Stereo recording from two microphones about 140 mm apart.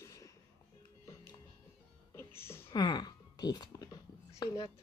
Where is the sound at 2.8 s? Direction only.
30° left (ahead or behind).